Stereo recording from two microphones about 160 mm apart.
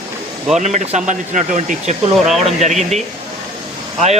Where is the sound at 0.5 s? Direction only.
45° right (ahead or behind).